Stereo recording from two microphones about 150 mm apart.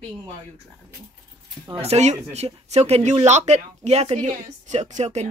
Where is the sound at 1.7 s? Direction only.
45° right (ahead or behind).